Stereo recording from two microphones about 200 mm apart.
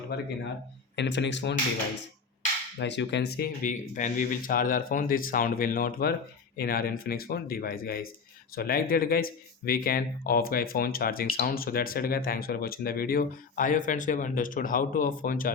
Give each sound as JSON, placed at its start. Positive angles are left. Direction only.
{"t": 0.1, "sound": "speech", "side_deg": 55}
{"t": 2.7, "sound": "speech", "side_deg": 60}